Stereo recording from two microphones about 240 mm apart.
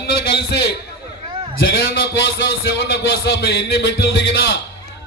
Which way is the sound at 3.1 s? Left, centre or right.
Left.